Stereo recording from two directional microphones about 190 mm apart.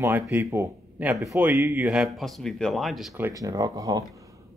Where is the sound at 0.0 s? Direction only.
10° right (ahead or behind).